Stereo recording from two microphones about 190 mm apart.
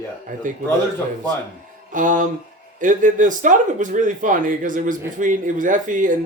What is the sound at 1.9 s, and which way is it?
Speech, 45° right (ahead or behind).